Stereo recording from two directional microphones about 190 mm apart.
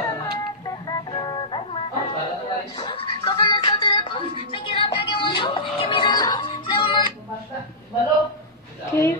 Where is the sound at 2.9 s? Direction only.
25° left (ahead or behind).